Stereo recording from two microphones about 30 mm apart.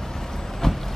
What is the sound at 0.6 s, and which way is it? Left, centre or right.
Vehicle, centre.